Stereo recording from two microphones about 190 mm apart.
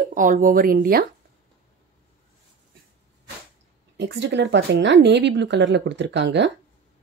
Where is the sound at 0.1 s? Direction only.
45° right (ahead or behind).